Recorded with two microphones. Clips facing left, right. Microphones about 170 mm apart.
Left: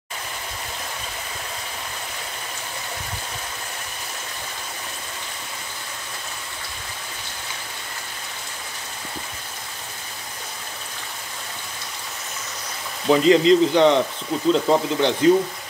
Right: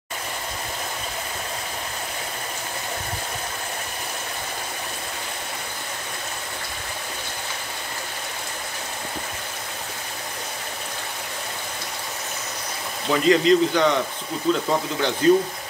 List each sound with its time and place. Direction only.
13.1 s speech: 25° left (ahead or behind)